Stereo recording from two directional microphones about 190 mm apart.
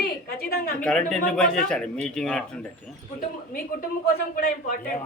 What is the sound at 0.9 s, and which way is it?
Speech, 5° left (ahead or behind).